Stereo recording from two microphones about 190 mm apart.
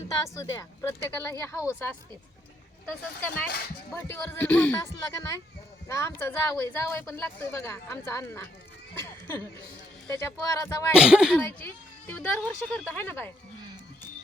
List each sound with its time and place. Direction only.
0.3 s speech: 15° left (ahead or behind)
3.2 s speech: 10° left (ahead or behind)
9.0 s a sound: 10° left (ahead or behind)
10.1 s speech: 15° left (ahead or behind)
10.9 s speech: 5° right (ahead or behind)
11.3 s speech: 10° left (ahead or behind)